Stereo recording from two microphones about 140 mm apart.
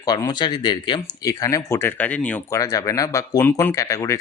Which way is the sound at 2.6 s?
25° left (ahead or behind).